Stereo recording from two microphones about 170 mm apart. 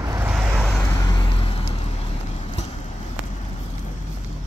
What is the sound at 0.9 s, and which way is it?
Vehicle, 25° left (ahead or behind).